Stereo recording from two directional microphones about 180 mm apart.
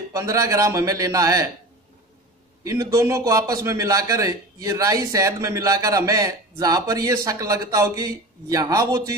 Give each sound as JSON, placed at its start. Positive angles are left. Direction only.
{"t": 0.1, "sound": "a man's voice", "side_deg": -20}
{"t": 2.6, "sound": "a man's voice", "side_deg": -20}